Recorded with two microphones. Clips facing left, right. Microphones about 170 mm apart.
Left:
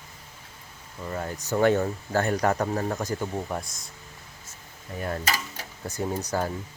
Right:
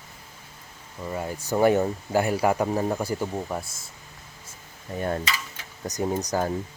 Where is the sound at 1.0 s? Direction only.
10° right (ahead or behind).